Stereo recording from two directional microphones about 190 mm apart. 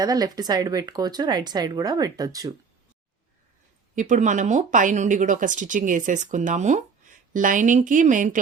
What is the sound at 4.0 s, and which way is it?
Speech, 40° right (ahead or behind).